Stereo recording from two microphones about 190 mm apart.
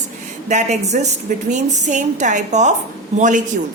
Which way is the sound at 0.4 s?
40° right (ahead or behind).